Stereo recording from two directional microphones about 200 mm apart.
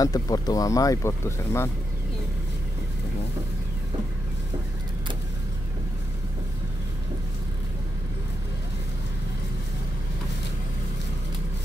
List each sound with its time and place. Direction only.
0.0 s speech: 20° left (ahead or behind)